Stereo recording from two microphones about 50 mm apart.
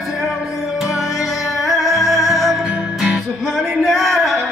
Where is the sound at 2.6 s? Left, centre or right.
Right.